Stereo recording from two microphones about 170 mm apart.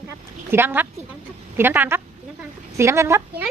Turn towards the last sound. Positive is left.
turn(degrees=-15)  # may be behind; listen again after turning